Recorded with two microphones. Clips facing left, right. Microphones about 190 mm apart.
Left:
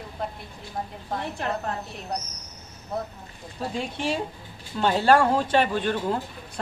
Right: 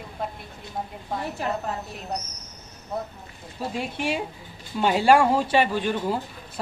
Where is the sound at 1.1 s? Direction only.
5° right (ahead or behind).